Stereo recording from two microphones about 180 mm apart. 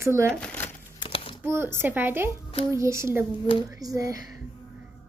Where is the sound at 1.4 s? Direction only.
15° right (ahead or behind).